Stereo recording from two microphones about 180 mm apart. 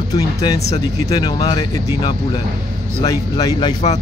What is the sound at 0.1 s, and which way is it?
Speech, 20° left (ahead or behind).